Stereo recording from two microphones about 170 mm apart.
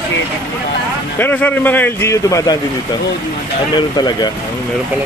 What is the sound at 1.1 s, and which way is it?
Speech, 10° left (ahead or behind).